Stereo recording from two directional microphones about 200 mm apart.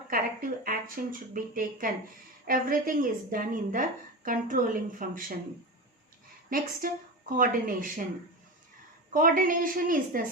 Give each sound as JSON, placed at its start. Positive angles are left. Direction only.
{"t": 0.1, "sound": "a woman's voice", "side_deg": -45}
{"t": 6.5, "sound": "a woman's voice", "side_deg": -45}
{"t": 9.1, "sound": "a woman's voice", "side_deg": -40}